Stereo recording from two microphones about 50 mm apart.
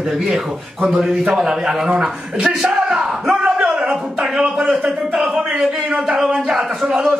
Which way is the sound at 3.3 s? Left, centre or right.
Centre.